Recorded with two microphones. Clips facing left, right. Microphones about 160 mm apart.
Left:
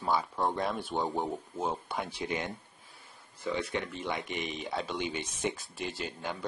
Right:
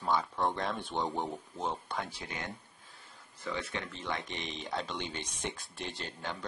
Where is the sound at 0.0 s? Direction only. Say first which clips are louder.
Left 1 dB; 5° left (ahead or behind).